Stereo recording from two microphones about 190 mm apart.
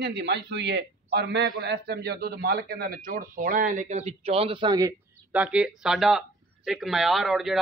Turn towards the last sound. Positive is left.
turn(degrees=0)  # may be behind; listen again after turning